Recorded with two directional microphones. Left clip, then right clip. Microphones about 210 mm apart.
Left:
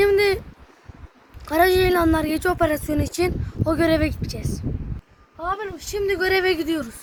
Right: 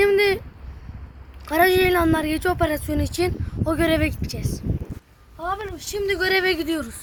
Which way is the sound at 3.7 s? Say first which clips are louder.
Left 1 dB; 5° right (ahead or behind).